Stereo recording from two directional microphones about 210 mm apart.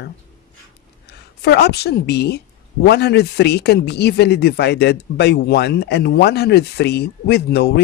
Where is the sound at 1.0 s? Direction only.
50° left (ahead or behind).